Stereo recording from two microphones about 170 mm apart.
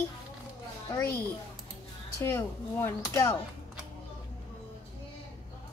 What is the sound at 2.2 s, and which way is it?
A woman's voice, 15° left (ahead or behind).